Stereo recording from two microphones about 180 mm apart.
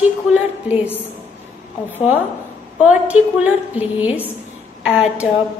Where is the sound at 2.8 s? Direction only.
5° right (ahead or behind).